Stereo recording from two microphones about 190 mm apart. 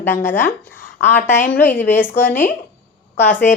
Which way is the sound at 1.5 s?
10° left (ahead or behind).